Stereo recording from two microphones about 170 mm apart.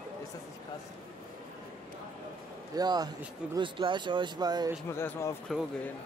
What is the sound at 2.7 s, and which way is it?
Speech, 25° right (ahead or behind).